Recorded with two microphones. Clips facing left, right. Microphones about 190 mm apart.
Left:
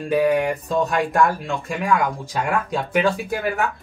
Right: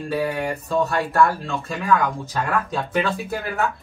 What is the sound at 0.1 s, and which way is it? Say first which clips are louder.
Speech: left 6 dB; 15° left (ahead or behind).